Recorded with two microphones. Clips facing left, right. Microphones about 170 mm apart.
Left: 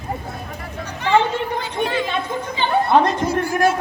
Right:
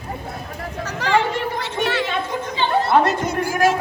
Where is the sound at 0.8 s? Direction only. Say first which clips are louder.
Left 2 dB; 90° right.